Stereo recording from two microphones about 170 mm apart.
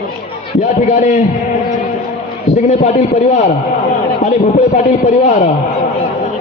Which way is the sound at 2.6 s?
40° left (ahead or behind).